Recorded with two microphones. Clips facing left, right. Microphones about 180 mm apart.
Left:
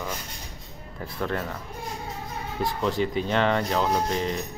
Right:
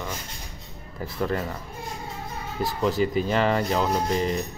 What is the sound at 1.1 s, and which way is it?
Speech, 5° right (ahead or behind).